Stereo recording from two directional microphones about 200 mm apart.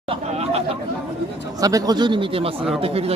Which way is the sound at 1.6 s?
20° right (ahead or behind).